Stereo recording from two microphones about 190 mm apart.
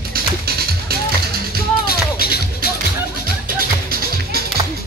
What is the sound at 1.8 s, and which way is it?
Music, 55° left (ahead or behind).